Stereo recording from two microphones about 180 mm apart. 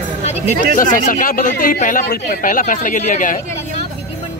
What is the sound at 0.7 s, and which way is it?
Speech, 50° left (ahead or behind).